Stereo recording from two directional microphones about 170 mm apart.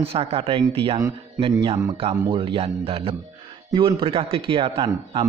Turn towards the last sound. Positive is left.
turn(degrees=-30)  # may be behind; listen again after turning